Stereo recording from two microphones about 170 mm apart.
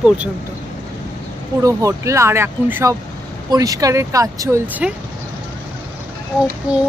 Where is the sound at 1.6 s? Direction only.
20° right (ahead or behind).